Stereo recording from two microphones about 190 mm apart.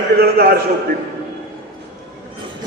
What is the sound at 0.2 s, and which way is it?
Speech, 55° right (ahead or behind).